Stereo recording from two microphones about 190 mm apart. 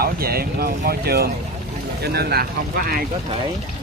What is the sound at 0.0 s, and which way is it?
Speech, 55° right (ahead or behind).